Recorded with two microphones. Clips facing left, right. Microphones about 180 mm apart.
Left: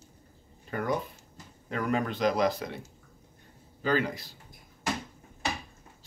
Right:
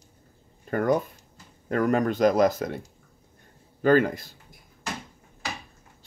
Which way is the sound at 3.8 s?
50° right (ahead or behind).